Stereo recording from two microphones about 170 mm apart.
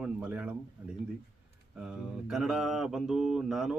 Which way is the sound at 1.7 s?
5° right (ahead or behind).